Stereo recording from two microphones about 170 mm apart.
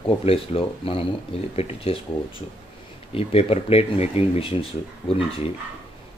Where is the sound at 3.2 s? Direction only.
35° left (ahead or behind).